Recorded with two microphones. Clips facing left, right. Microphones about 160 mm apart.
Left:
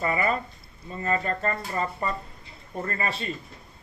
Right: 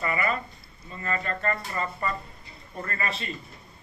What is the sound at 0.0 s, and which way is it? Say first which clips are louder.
Speech: left 2 dB; 30° left (ahead or behind).